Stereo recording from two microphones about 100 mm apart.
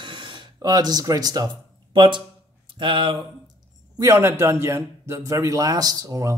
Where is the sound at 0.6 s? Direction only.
40° right (ahead or behind).